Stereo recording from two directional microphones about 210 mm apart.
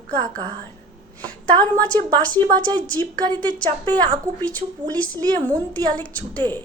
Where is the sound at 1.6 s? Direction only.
5° left (ahead or behind).